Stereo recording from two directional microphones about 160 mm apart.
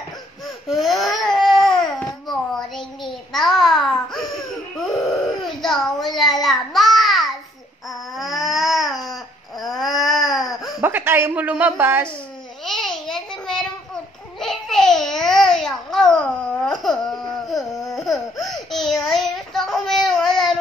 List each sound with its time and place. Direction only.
0.7 s baby cry: centre (ahead or behind)
5.4 s baby cry: centre (ahead or behind)
6.1 s child singing: centre (ahead or behind)
7.9 s baby cry: centre (ahead or behind)
10.8 s a sound: 10° right (ahead or behind)
11.7 s a woman's voice: 15° right (ahead or behind)
12.6 s babbling: 5° left (ahead or behind)
14.4 s babbling: centre (ahead or behind)
17.9 s baby cry: centre (ahead or behind)
19.0 s child singing: centre (ahead or behind)